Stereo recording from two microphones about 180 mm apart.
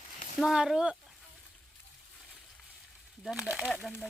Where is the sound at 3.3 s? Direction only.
5° right (ahead or behind).